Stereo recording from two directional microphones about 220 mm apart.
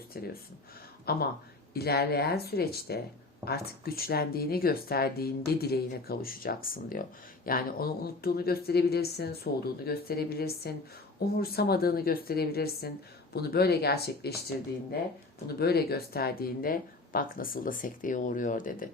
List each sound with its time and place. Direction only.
0.1 s speech: 45° left (ahead or behind)
15.4 s speech: 45° left (ahead or behind)